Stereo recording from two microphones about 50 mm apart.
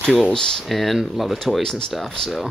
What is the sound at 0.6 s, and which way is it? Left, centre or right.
Speech, centre.